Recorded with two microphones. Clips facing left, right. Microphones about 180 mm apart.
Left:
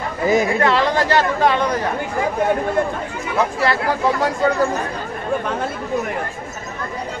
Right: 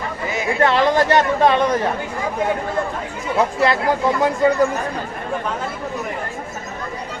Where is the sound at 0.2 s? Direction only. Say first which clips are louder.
Left 11 dB; 40° left (ahead or behind).